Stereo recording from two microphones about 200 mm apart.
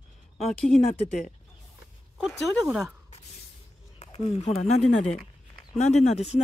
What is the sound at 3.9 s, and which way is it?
Speech, 30° left (ahead or behind).